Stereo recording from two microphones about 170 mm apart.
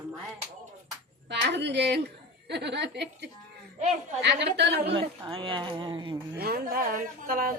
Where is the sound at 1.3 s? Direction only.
85° right.